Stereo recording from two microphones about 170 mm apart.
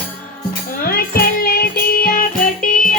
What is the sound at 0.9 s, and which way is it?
Music, 60° left (ahead or behind).